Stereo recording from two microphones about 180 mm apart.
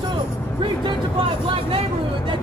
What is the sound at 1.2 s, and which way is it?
Speech, 30° right (ahead or behind).